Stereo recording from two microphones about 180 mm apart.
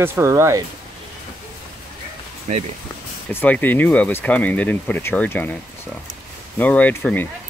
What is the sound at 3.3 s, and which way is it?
Speech, 10° left (ahead or behind).